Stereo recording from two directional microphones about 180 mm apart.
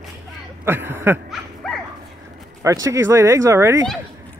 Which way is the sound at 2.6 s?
20° right (ahead or behind).